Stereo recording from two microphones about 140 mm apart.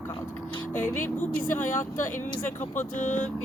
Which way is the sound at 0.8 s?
70° left (ahead or behind).